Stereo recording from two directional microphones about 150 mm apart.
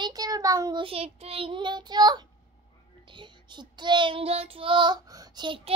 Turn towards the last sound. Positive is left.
turn(degrees=-35)  # may be behind; listen again after turning